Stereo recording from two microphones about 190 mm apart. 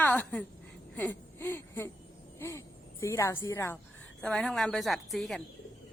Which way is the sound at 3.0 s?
15° left (ahead or behind).